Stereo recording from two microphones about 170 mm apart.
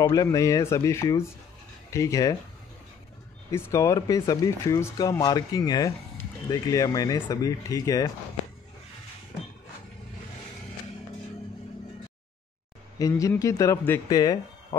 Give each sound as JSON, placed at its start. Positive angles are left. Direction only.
{"t": 0.1, "sound": "speech", "side_deg": 20}
{"t": 3.5, "sound": "speech", "side_deg": 20}
{"t": 13.0, "sound": "speech", "side_deg": 15}